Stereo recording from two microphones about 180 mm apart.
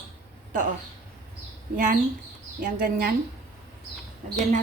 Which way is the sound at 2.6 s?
55° right (ahead or behind).